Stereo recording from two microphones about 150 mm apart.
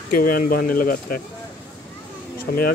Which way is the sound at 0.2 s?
70° left (ahead or behind).